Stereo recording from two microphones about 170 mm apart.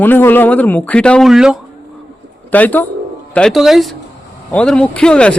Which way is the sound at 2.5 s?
10° left (ahead or behind).